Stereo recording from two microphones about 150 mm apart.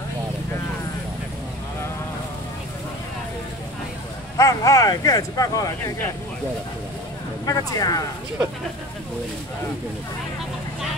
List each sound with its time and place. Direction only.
4.4 s speech: 25° left (ahead or behind)
7.4 s speech: 25° left (ahead or behind)